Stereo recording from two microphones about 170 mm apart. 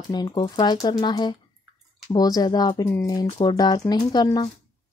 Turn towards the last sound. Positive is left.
turn(degrees=25)  # may be behind; listen again after turning